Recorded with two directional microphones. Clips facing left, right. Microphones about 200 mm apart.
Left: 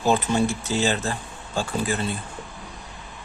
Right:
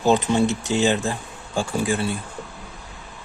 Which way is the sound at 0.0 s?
15° right (ahead or behind).